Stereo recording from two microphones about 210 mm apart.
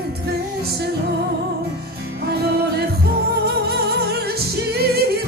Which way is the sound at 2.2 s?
50° right (ahead or behind).